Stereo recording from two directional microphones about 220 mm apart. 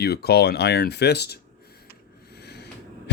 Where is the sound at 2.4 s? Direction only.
50° left (ahead or behind).